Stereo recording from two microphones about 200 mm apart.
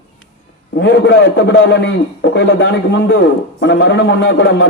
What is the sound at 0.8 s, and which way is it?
A man's voice, 60° left (ahead or behind).